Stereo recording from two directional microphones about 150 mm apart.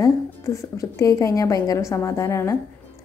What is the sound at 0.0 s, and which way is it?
Speech, 20° left (ahead or behind).